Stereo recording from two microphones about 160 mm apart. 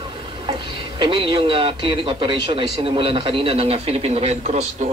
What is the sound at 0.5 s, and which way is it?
A man's voice, 30° right (ahead or behind).